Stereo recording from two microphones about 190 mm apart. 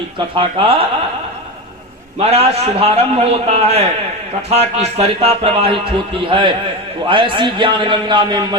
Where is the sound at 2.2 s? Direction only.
35° right (ahead or behind).